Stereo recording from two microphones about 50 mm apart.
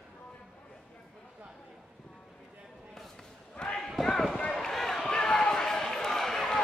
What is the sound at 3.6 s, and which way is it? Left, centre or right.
Basketball bounce, centre.